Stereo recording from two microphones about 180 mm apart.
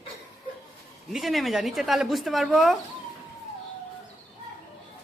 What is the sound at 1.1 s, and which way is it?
Speech, centre (ahead or behind).